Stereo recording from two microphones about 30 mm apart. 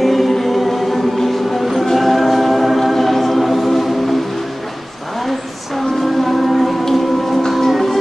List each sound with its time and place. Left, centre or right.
0.0 s music: centre
5.8 s music: centre